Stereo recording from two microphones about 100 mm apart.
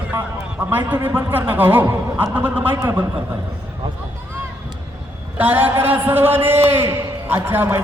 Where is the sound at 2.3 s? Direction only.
20° right (ahead or behind).